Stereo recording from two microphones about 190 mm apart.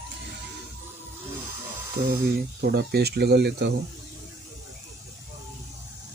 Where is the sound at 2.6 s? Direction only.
55° right (ahead or behind).